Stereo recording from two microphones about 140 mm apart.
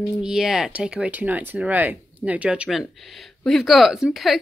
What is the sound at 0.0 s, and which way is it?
Speech, 5° right (ahead or behind).